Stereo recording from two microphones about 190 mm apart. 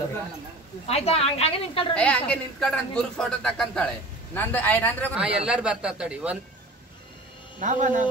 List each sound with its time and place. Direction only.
0.8 s a woman's voice: 30° left (ahead or behind)
2.0 s a woman's voice: 5° left (ahead or behind)
5.1 s speech: 5° right (ahead or behind)
7.6 s a man's voice: 40° right (ahead or behind)